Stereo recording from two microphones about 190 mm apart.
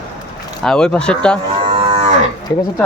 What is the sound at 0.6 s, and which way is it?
Speech, 5° left (ahead or behind).